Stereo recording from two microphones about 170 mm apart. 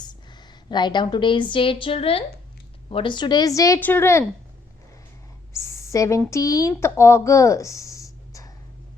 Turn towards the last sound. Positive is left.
turn(degrees=20)  # may be behind; listen again after turning